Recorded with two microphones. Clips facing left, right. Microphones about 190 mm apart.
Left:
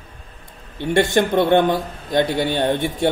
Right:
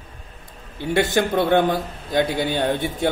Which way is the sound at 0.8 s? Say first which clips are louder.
Left 3 dB; 5° right (ahead or behind).